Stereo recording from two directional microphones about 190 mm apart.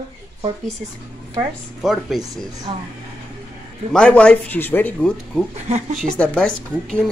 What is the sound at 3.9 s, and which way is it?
Speech, 5° left (ahead or behind).